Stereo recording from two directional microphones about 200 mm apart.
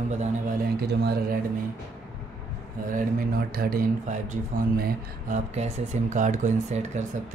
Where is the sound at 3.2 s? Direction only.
50° right (ahead or behind).